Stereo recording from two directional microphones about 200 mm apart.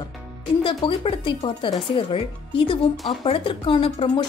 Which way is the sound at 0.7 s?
25° left (ahead or behind).